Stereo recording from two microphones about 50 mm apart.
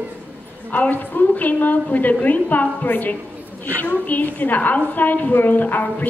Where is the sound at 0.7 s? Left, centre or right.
Left.